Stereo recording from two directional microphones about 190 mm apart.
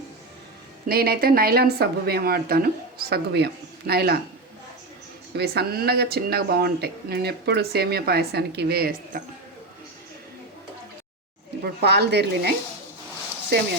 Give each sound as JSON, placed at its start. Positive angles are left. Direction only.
{"t": 0.9, "sound": "speech", "side_deg": -55}
{"t": 5.3, "sound": "speech", "side_deg": -60}
{"t": 11.6, "sound": "speech", "side_deg": -60}